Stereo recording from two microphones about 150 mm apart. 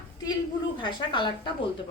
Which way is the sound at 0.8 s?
30° left (ahead or behind).